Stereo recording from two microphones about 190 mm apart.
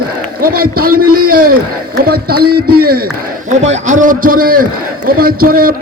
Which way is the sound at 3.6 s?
40° right (ahead or behind).